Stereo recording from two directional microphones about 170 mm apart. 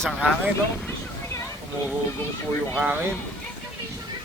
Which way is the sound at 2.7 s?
10° right (ahead or behind).